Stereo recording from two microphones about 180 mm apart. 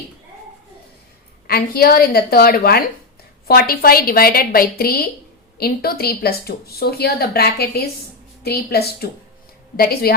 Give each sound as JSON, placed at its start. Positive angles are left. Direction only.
{"t": 1.5, "sound": "speech", "side_deg": 55}